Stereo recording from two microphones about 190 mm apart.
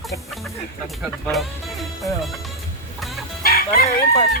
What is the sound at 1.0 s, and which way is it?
Speech, centre (ahead or behind).